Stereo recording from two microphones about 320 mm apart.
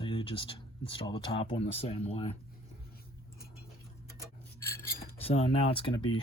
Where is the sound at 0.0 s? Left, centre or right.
Centre.